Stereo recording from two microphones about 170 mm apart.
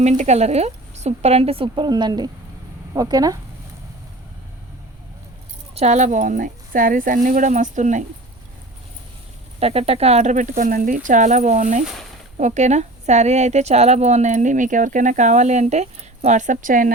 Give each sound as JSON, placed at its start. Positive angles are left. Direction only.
{"t": 0.0, "sound": "speech", "side_deg": -40}
{"t": 5.7, "sound": "a woman's voice", "side_deg": -40}
{"t": 9.6, "sound": "a woman's voice", "side_deg": -35}